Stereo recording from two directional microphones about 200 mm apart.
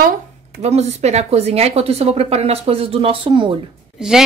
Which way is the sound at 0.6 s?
35° right (ahead or behind).